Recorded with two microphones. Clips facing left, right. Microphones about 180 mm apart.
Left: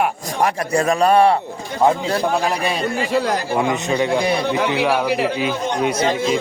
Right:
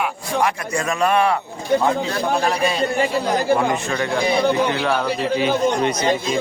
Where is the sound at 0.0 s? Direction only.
35° left (ahead or behind).